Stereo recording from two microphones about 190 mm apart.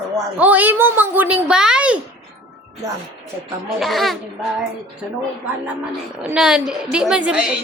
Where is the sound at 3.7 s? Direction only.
Centre (ahead or behind).